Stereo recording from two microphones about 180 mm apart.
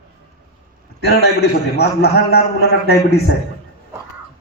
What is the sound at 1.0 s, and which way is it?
A man's voice, 60° left (ahead or behind).